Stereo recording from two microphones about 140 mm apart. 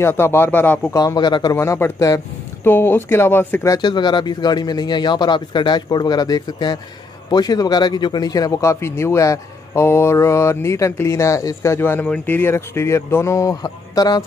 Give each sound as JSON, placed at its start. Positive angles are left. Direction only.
{"t": 0.0, "sound": "speech", "side_deg": 15}
{"t": 0.9, "sound": "speech", "side_deg": 30}
{"t": 1.6, "sound": "speech", "side_deg": 20}